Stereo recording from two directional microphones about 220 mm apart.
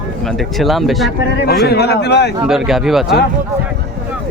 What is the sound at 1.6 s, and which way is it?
Speech, 50° left (ahead or behind).